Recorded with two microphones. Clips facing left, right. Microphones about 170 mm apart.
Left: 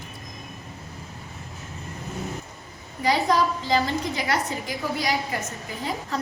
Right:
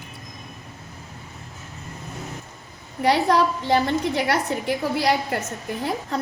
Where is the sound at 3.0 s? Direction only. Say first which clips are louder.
Right 3 dB; 65° right (ahead or behind).